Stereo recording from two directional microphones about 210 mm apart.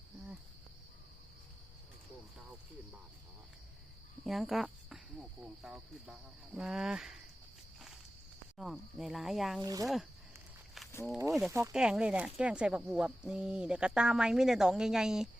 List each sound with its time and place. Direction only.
4.2 s speech: centre (ahead or behind)
8.5 s speech: centre (ahead or behind)
9.6 s speech: 15° right (ahead or behind)
9.8 s speech: centre (ahead or behind)
10.8 s walk: centre (ahead or behind)
11.3 s speech: centre (ahead or behind)